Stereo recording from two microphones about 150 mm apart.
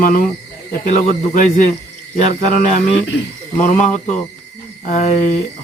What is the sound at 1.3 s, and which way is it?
Speech, 60° left (ahead or behind).